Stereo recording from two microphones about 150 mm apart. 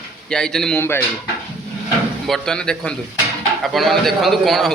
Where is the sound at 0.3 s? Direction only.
5° left (ahead or behind).